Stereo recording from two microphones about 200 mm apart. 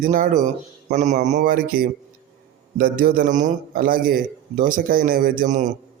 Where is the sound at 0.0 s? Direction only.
40° right (ahead or behind).